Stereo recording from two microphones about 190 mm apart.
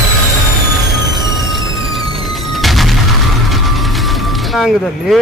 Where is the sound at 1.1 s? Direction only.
Centre (ahead or behind).